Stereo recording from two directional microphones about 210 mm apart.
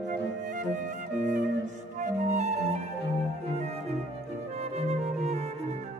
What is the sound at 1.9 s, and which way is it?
Flute, 35° right (ahead or behind).